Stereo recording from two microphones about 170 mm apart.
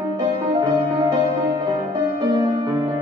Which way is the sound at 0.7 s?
25° right (ahead or behind).